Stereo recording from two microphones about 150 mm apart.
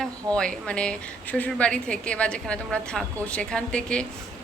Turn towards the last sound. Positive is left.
turn(degrees=5)  # may be behind; listen again after turning